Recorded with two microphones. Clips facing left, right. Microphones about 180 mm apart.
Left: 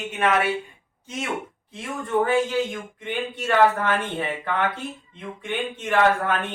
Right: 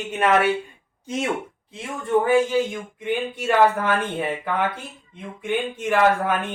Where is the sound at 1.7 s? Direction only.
20° right (ahead or behind).